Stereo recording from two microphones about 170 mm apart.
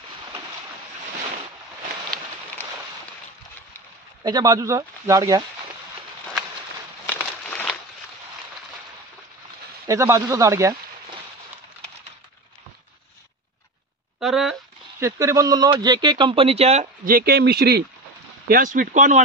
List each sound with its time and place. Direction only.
4.2 s speech: 20° right (ahead or behind)
7.1 s a sound: 5° left (ahead or behind)
9.8 s speech: 20° right (ahead or behind)
14.2 s a sound: centre (ahead or behind)
15.0 s speech: 15° right (ahead or behind); by 16.8 s 35° right (ahead or behind)
17.0 s speech: 60° right (ahead or behind)
18.5 s speech: 50° right (ahead or behind)